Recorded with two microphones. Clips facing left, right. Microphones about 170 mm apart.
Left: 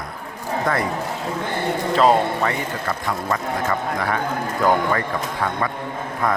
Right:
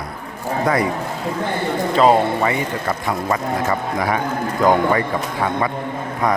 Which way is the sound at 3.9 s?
15° right (ahead or behind).